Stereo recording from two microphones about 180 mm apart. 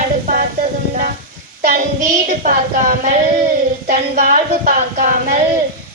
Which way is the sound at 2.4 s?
45° right (ahead or behind).